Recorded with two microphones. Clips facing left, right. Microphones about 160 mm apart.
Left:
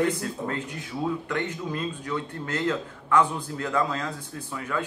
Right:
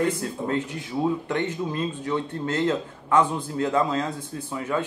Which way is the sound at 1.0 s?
25° right (ahead or behind).